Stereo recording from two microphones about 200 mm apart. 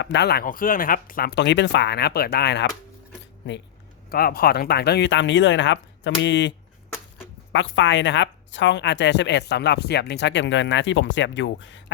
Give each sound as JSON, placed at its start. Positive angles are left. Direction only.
{"t": 0.0, "sound": "speech", "side_deg": 60}
{"t": 4.1, "sound": "speech", "side_deg": 50}
{"t": 7.5, "sound": "speech", "side_deg": 65}